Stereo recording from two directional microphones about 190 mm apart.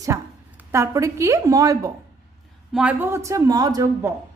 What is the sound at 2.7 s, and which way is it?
Speech, 5° right (ahead or behind).